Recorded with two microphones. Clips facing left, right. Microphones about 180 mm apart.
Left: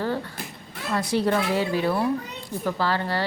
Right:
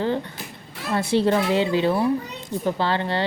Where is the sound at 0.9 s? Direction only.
25° right (ahead or behind).